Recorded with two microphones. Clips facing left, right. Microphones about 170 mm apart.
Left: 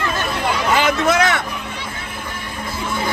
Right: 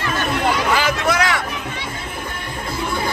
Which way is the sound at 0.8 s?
20° left (ahead or behind).